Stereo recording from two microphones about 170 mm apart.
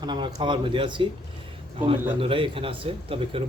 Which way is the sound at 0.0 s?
25° right (ahead or behind).